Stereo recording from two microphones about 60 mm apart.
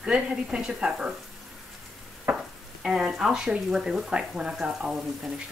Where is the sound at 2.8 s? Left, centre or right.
Centre.